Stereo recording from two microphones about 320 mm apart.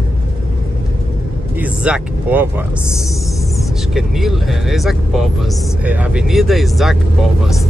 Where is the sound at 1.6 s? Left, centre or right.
Centre.